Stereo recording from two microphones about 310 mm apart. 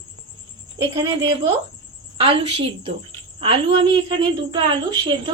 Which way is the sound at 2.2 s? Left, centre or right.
Centre.